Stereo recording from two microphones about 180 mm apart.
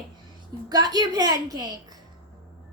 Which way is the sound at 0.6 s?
20° right (ahead or behind).